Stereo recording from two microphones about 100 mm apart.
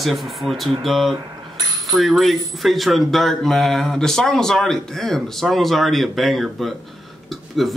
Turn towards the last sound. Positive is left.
turn(degrees=0)  # may be behind; listen again after turning